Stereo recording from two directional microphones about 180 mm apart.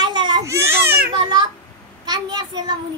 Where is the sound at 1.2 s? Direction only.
25° right (ahead or behind).